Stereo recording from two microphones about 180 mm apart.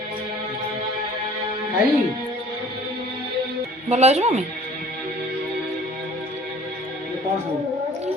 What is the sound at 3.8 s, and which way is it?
Speech, 35° right (ahead or behind).